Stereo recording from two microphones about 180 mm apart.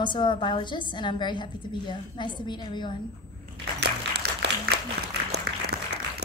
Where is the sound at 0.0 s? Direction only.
25° left (ahead or behind).